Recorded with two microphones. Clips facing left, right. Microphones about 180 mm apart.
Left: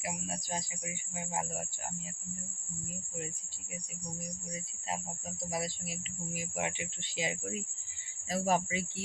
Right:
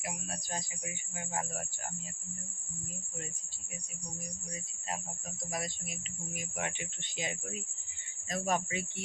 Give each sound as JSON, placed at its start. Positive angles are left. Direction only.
{"t": 0.0, "sound": "speech", "side_deg": 20}
{"t": 5.5, "sound": "speech", "side_deg": 25}